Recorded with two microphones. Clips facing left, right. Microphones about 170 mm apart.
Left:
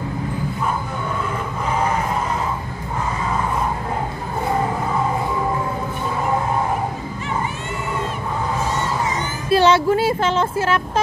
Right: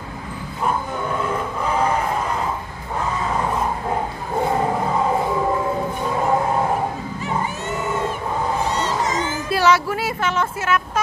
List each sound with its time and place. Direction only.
9.5 s speech: 25° left (ahead or behind)